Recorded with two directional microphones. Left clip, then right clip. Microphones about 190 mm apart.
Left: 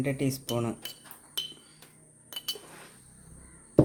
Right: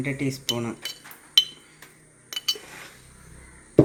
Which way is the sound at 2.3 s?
45° left (ahead or behind).